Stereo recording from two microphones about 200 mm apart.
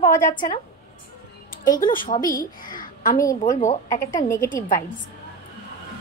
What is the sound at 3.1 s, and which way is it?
Speech, 15° left (ahead or behind).